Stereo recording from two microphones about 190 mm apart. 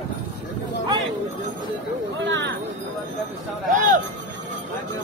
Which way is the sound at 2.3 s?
75° right (ahead or behind).